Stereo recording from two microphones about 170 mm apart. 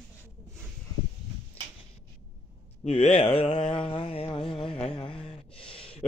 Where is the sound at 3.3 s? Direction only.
35° left (ahead or behind).